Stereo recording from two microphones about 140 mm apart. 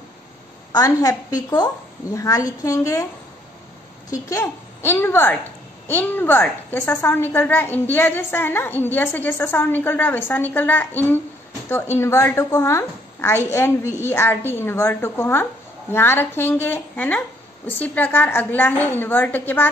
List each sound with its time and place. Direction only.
0.7 s a woman's voice: 25° left (ahead or behind)
4.3 s a woman's voice: 20° left (ahead or behind)